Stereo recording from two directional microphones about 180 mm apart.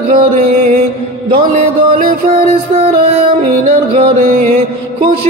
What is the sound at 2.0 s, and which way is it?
Music, 50° right (ahead or behind).